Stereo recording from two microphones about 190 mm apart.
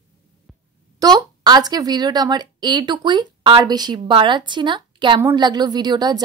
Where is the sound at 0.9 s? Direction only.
20° right (ahead or behind).